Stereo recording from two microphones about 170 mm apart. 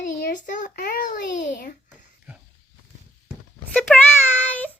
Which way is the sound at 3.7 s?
5° left (ahead or behind).